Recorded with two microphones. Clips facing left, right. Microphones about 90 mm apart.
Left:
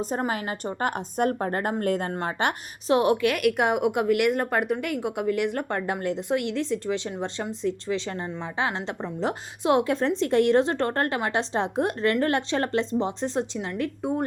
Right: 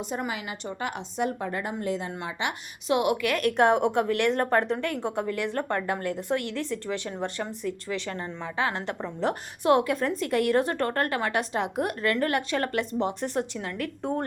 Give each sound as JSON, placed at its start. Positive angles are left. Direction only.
{"t": 0.1, "sound": "a woman's voice", "side_deg": 40}
{"t": 2.9, "sound": "a woman's voice", "side_deg": 35}
{"t": 3.3, "sound": "a woman's voice", "side_deg": 10}